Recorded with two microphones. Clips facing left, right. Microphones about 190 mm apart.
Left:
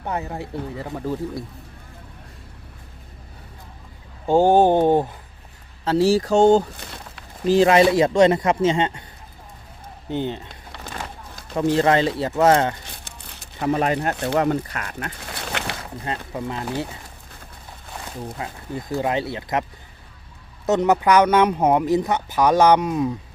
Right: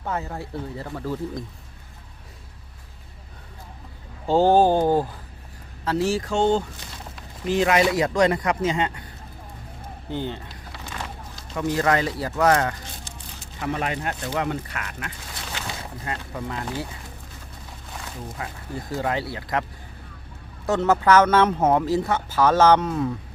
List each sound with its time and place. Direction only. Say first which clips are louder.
0.0 s speech: left 2 dB; 15° left (ahead or behind)
4.3 s speech: left 2 dB; 15° left (ahead or behind)
10.1 s speech: left 4 dB; 20° left (ahead or behind)
11.5 s speech: left 4 dB; 30° left (ahead or behind)
13.6 s speech: left 6 dB; 35° left (ahead or behind)
15.3 s a sound: left 7 dB; 65° left (ahead or behind)
16.0 s speech: left 4 dB; 20° left (ahead or behind)
18.4 s speech: even; 25° left (ahead or behind)
20.7 s speech: left 2 dB; 20° left (ahead or behind)